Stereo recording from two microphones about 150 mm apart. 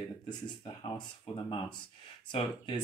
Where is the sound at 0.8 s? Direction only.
30° left (ahead or behind).